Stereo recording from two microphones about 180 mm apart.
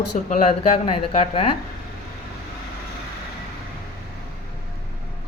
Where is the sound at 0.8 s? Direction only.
30° left (ahead or behind).